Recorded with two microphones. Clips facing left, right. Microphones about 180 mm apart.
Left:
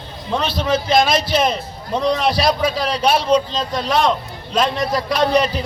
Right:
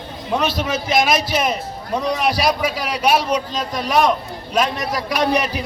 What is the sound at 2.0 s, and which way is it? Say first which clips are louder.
A man's voice: left 2 dB; 10° right (ahead or behind).